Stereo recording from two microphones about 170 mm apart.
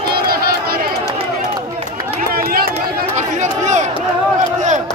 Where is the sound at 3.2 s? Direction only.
45° right (ahead or behind).